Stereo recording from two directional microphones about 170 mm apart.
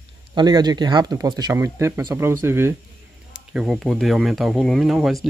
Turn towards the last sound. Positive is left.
turn(degrees=0)  # may be behind; listen again after turning